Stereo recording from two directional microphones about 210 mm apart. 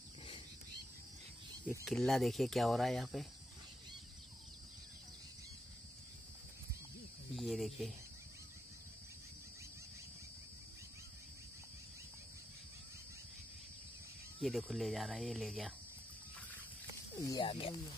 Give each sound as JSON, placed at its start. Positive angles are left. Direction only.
{"t": 1.9, "sound": "speech", "side_deg": 0}
{"t": 7.3, "sound": "speech", "side_deg": 0}
{"t": 14.4, "sound": "speech", "side_deg": 0}
{"t": 17.1, "sound": "speech", "side_deg": 20}